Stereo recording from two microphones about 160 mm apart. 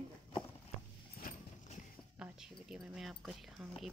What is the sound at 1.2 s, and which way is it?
Clip-clop, 60° left (ahead or behind).